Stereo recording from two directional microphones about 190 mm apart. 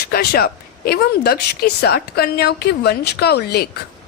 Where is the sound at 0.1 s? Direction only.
55° left (ahead or behind).